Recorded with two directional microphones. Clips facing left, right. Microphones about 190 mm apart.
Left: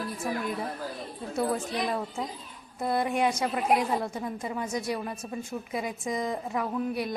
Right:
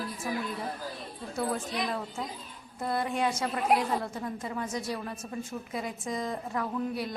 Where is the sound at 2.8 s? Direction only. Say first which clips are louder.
Left 3 dB; 15° left (ahead or behind).